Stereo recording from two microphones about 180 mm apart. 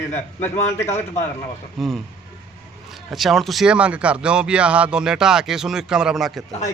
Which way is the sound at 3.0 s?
Centre (ahead or behind).